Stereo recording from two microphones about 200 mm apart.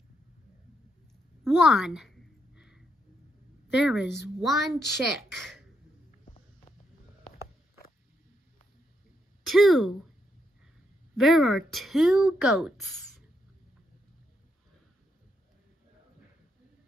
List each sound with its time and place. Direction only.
1.4 s a sound: centre (ahead or behind)
3.7 s speech: 5° right (ahead or behind)
6.2 s music: 25° left (ahead or behind)
9.4 s speech: centre (ahead or behind)
11.1 s speech: centre (ahead or behind)